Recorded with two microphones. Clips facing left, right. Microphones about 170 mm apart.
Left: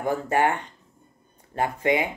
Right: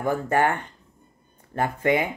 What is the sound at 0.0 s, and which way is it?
Speech, 50° right (ahead or behind).